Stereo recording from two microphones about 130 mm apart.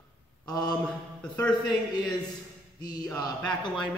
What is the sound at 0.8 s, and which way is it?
Speech, 5° left (ahead or behind).